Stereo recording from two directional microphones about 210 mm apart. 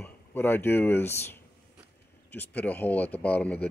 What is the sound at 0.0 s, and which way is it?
Speech, 10° left (ahead or behind).